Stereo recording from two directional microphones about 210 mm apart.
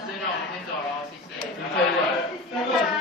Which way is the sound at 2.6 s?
Centre (ahead or behind).